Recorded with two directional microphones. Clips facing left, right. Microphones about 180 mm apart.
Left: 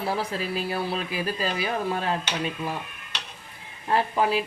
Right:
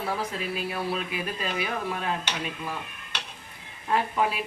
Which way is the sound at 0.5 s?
30° left (ahead or behind).